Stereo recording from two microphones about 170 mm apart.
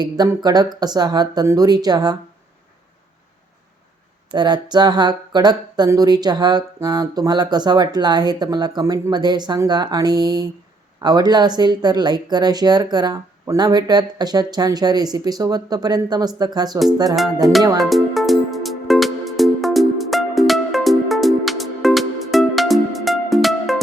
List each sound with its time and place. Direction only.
0.0 s speech: 25° right (ahead or behind)
4.3 s speech: 25° right (ahead or behind)
17.7 s music: centre (ahead or behind)